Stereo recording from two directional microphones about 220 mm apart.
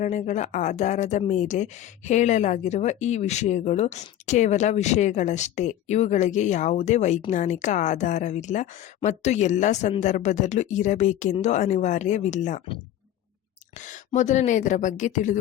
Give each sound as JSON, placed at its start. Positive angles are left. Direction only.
{"t": 0.0, "sound": "speech", "side_deg": 35}